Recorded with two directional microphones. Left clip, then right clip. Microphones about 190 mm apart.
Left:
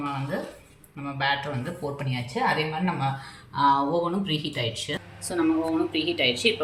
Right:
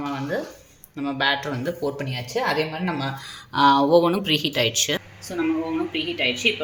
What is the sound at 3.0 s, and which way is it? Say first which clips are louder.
Speech: even; 60° right (ahead or behind).